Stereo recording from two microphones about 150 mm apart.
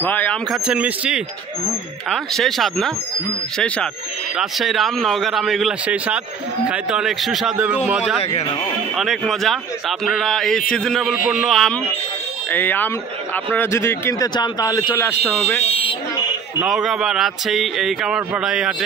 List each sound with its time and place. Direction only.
0.0 s speech: 10° left (ahead or behind)
0.5 s speech: 10° right (ahead or behind)
8.2 s speech: 40° left (ahead or behind)
8.9 s speech: centre (ahead or behind)
12.4 s speech: 10° left (ahead or behind)
15.6 s speech: 40° left (ahead or behind)
16.6 s speech: centre (ahead or behind)